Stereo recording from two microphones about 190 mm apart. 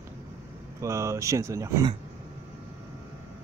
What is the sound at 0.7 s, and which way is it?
Speech, 15° right (ahead or behind).